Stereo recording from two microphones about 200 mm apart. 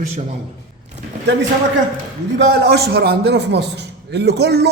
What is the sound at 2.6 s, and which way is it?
A man's voice, 55° right (ahead or behind).